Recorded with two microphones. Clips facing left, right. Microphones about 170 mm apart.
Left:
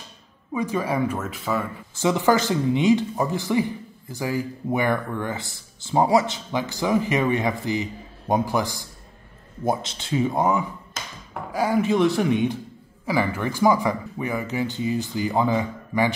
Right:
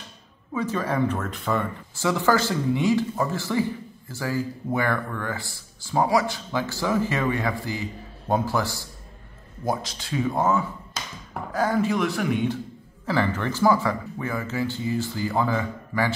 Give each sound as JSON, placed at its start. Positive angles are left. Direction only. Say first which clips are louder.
{"t": 0.5, "sound": "speech", "louder": "left 2 dB", "side_deg": 15}
{"t": 2.0, "sound": "speech", "louder": "left 2 dB", "side_deg": 20}
{"t": 11.9, "sound": "speech", "louder": "left 4 dB", "side_deg": 25}